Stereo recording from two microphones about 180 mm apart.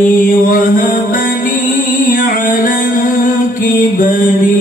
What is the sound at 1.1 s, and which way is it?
Music, 50° left (ahead or behind).